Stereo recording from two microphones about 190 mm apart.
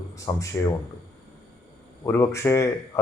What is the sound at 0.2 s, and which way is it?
Speech, 15° left (ahead or behind).